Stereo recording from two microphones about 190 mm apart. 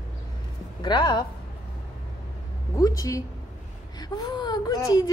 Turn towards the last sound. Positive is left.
turn(degrees=20)  # may be behind; listen again after turning